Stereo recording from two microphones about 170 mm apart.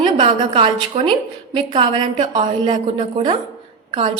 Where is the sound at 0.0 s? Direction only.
30° right (ahead or behind).